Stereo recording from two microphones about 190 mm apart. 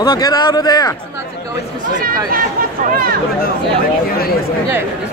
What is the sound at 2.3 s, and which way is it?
Speech, 50° right (ahead or behind).